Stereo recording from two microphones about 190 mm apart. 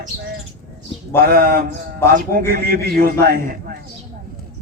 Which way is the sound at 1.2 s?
50° right (ahead or behind).